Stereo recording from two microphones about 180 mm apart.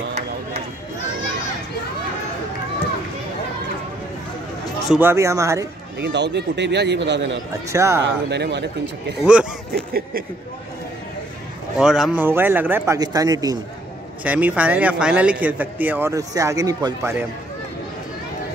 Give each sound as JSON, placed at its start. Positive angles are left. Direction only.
{"t": 4.8, "sound": "a man's voice", "side_deg": -10}
{"t": 6.0, "sound": "speech", "side_deg": -70}
{"t": 7.5, "sound": "a man's voice", "side_deg": -15}
{"t": 8.3, "sound": "speech", "side_deg": -70}
{"t": 9.2, "sound": "speech", "side_deg": -5}
{"t": 11.8, "sound": "a man's voice", "side_deg": -5}
{"t": 14.2, "sound": "a man's voice", "side_deg": -10}